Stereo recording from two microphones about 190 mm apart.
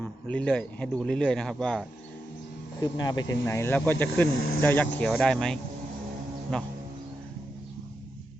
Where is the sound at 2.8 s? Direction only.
20° left (ahead or behind); by 6.7 s 5° left (ahead or behind).